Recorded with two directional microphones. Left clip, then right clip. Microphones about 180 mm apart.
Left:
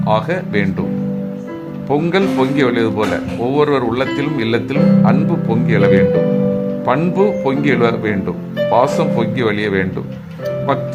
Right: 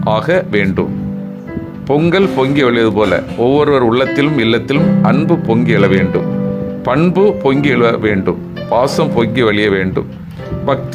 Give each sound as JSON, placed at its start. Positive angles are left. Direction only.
{"t": 0.0, "sound": "speech", "side_deg": -25}
{"t": 1.9, "sound": "speech", "side_deg": -25}